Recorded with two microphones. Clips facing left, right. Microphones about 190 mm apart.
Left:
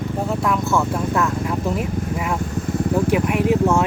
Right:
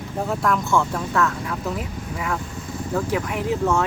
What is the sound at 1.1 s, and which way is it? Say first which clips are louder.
Speech: left 2 dB; 15° left (ahead or behind).